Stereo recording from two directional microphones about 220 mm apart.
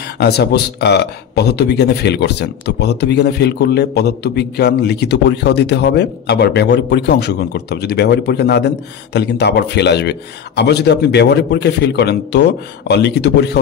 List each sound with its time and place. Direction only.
0.2 s a man's voice: 50° left (ahead or behind)